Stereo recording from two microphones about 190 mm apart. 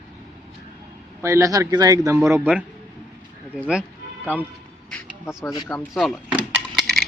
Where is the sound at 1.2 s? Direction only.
15° right (ahead or behind).